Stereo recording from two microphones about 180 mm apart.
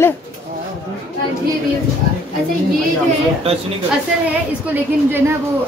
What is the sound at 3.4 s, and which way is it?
Speech, 30° right (ahead or behind).